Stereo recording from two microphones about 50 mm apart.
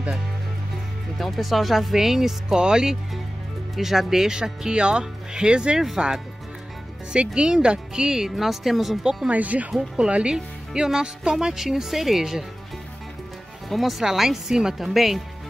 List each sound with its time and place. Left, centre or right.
1.1 s speech: centre
7.1 s speech: centre
9.3 s speech: right
9.7 s speech: centre
13.7 s speech: centre